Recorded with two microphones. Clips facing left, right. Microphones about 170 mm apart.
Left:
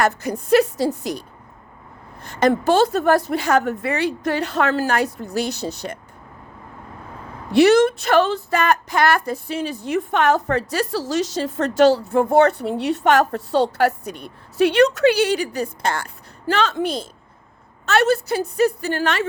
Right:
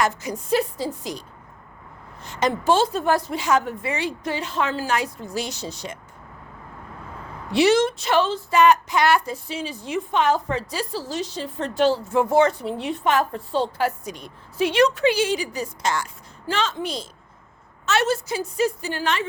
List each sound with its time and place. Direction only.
0.0 s a woman's voice: 60° left (ahead or behind)
2.2 s a woman's voice: 55° left (ahead or behind)
7.5 s a woman's voice: 60° left (ahead or behind); by 12.1 s 75° left (ahead or behind)
12.1 s a woman's voice: 55° left (ahead or behind)